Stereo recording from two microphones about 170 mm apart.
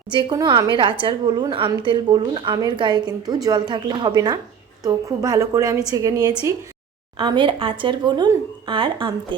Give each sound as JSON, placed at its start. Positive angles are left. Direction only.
{"t": 0.1, "sound": "a woman's voice", "side_deg": -25}